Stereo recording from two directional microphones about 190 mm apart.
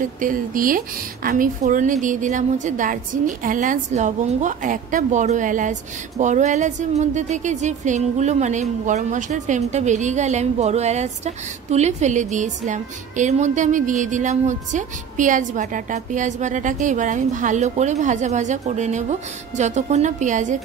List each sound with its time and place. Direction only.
0.2 s a woman's voice: 45° right (ahead or behind)